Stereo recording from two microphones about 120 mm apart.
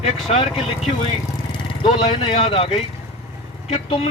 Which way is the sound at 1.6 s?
45° left (ahead or behind).